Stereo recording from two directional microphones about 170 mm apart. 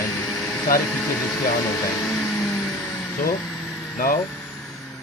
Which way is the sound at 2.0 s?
5° left (ahead or behind).